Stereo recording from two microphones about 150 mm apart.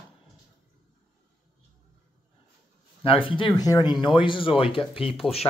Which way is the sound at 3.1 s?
35° left (ahead or behind).